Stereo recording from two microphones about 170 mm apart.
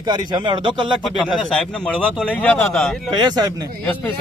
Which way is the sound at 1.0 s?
Centre (ahead or behind).